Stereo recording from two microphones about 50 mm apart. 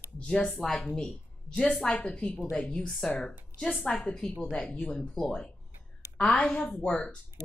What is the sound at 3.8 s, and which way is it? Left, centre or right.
Speech, left.